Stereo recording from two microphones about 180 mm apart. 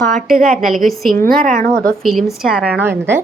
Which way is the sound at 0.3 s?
50° right (ahead or behind).